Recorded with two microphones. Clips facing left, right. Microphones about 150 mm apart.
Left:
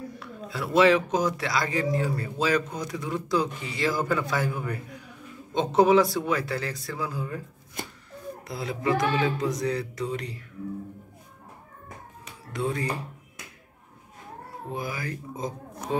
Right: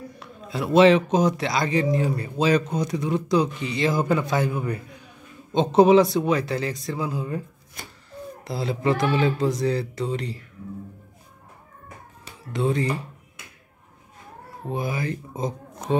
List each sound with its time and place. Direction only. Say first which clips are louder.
0.2 s speech: right 7 dB; 20° right (ahead or behind)
8.5 s speech: right 3 dB; 30° right (ahead or behind)
12.5 s speech: right 5 dB; 25° right (ahead or behind)
14.7 s speech: right 6 dB; 25° right (ahead or behind)